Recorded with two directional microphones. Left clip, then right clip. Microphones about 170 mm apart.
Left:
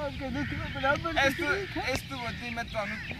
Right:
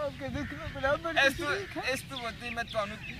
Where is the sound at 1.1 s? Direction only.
30° right (ahead or behind).